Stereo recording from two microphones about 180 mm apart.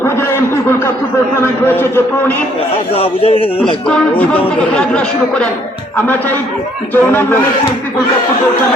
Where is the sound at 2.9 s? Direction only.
35° left (ahead or behind).